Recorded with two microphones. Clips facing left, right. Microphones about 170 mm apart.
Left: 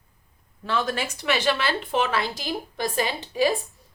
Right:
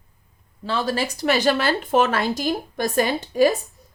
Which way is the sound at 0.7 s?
30° right (ahead or behind).